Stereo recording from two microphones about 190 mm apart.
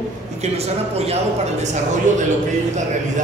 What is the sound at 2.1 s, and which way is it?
Speech, 40° right (ahead or behind).